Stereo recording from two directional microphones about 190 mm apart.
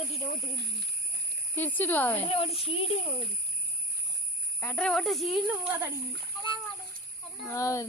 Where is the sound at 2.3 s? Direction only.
30° left (ahead or behind).